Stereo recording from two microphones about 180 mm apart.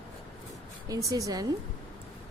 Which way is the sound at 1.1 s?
20° right (ahead or behind).